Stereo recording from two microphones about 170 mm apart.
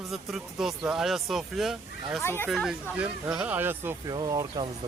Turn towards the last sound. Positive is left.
turn(degrees=-25)  # may be behind; listen again after turning